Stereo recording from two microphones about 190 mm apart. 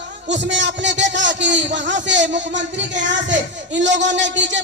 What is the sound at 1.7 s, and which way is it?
Speech, 70° right (ahead or behind).